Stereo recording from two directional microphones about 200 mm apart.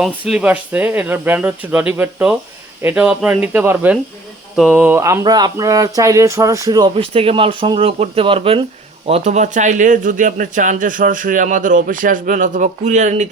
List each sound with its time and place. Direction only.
0.0 s speech: 5° right (ahead or behind); by 13.2 s 35° right (ahead or behind)